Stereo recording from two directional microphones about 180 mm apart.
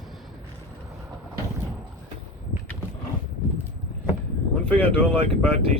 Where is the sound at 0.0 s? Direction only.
Centre (ahead or behind).